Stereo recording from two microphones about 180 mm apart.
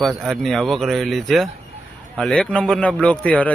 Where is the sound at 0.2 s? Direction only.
Centre (ahead or behind).